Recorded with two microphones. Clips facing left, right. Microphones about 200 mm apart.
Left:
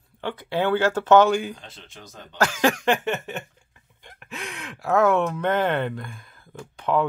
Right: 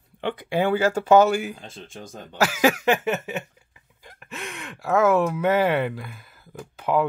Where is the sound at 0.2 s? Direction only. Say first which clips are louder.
Right 1 dB; 15° right (ahead or behind).